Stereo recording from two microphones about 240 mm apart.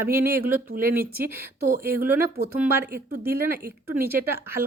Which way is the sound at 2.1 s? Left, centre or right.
Centre.